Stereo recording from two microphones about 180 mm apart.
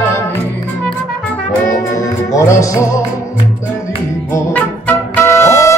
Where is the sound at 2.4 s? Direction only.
15° left (ahead or behind).